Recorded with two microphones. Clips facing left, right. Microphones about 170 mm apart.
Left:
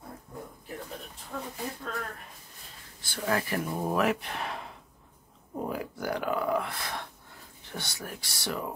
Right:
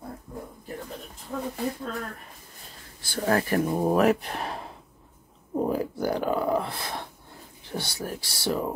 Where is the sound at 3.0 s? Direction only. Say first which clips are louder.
Right 5 dB; 40° right (ahead or behind).